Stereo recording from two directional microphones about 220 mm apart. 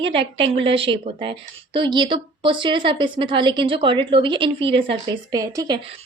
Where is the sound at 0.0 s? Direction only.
25° right (ahead or behind).